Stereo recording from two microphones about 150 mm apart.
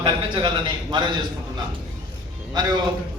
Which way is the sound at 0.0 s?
30° right (ahead or behind).